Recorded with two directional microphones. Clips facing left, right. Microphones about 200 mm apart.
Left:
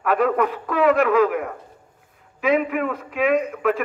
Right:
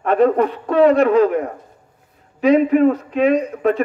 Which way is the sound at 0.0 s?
30° right (ahead or behind).